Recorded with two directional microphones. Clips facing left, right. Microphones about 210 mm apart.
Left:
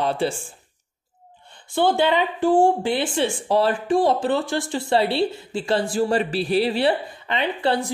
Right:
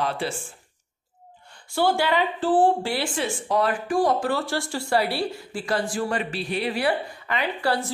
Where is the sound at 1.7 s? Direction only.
20° left (ahead or behind).